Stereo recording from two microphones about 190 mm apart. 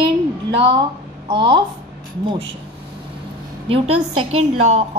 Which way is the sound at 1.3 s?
25° right (ahead or behind).